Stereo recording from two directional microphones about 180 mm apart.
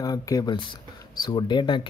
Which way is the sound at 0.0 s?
20° left (ahead or behind).